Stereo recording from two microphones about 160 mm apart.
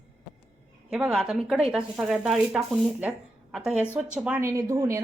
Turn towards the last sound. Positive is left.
turn(degrees=-15)  # may be behind; listen again after turning